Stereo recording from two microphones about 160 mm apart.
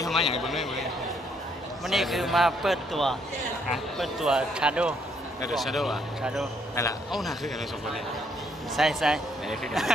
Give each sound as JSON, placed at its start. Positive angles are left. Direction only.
{"t": 0.1, "sound": "a man's voice", "side_deg": 0}
{"t": 1.9, "sound": "a man's voice", "side_deg": 0}
{"t": 6.7, "sound": "a man's voice", "side_deg": 20}
{"t": 7.1, "sound": "a man's voice", "side_deg": 0}